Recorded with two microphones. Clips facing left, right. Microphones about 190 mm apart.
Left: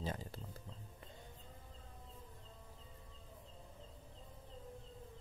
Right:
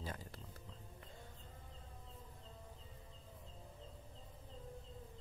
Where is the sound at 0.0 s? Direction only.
25° left (ahead or behind).